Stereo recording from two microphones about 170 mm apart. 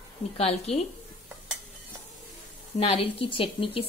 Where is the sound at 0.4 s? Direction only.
35° left (ahead or behind).